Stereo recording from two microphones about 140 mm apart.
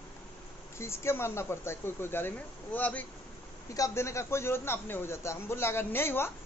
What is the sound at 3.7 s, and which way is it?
A man's voice, 20° left (ahead or behind).